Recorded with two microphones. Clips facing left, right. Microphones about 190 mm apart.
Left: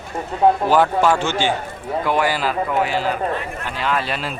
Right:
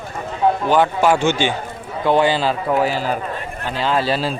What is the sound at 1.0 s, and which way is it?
Speech, 15° right (ahead or behind).